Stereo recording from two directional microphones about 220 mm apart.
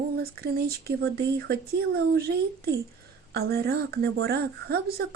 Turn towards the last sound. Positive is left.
turn(degrees=-45)  # may be behind; listen again after turning